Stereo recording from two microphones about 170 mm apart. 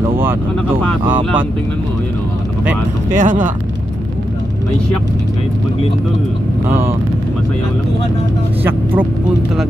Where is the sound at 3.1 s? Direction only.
45° right (ahead or behind).